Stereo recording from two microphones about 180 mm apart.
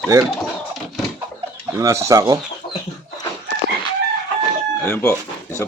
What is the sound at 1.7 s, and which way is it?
Speech, 15° right (ahead or behind).